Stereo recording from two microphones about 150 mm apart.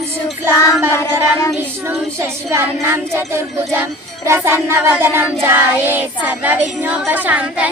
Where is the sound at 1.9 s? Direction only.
15° right (ahead or behind).